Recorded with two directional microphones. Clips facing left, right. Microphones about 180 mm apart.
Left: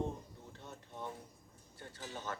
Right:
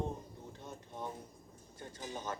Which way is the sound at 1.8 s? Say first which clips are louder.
Right 2 dB; 15° right (ahead or behind).